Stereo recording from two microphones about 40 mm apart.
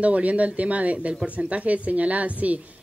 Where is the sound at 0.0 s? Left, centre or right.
Right.